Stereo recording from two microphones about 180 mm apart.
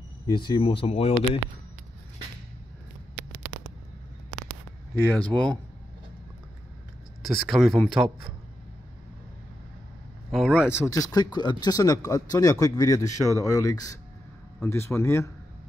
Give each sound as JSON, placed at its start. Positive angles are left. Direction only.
{"t": 0.3, "sound": "speech", "side_deg": 25}
{"t": 3.5, "sound": "a sound", "side_deg": -20}
{"t": 5.1, "sound": "speech", "side_deg": 5}
{"t": 7.2, "sound": "speech", "side_deg": 0}
{"t": 10.3, "sound": "speech", "side_deg": -5}
{"t": 10.9, "sound": "speech", "side_deg": 20}